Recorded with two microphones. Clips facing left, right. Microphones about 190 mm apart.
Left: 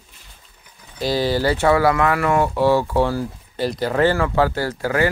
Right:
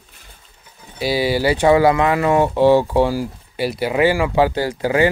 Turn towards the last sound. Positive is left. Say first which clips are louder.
# right 3 dB
turn(degrees=-20)  # may be behind; listen again after turning